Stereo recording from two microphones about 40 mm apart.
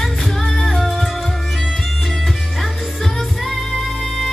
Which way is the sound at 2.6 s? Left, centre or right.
Centre.